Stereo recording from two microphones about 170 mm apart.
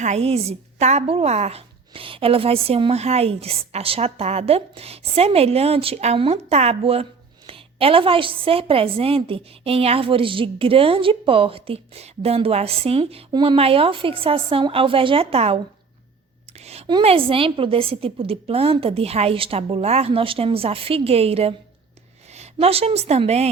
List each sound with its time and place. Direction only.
0.0 s a woman's voice: 40° right (ahead or behind)